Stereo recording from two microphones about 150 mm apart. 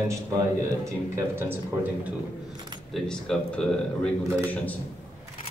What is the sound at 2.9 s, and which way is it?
Speech, 5° left (ahead or behind).